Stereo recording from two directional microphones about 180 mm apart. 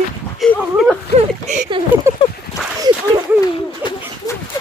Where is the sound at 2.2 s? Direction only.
25° left (ahead or behind).